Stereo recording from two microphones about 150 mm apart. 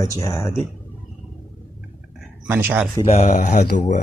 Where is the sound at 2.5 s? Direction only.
15° right (ahead or behind).